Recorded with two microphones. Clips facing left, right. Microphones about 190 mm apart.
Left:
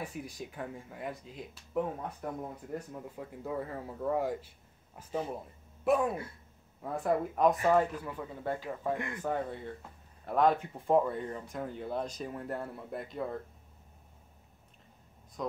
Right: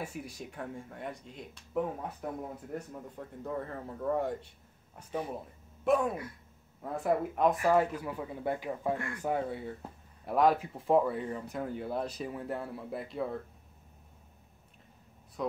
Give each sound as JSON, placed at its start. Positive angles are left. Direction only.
{"t": 0.0, "sound": "speech", "side_deg": 0}
{"t": 7.7, "sound": "speech", "side_deg": -10}
{"t": 8.9, "sound": "speech", "side_deg": 20}
{"t": 9.2, "sound": "speech", "side_deg": -10}